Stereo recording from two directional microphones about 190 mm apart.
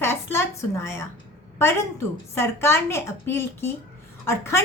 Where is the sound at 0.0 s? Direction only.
15° left (ahead or behind).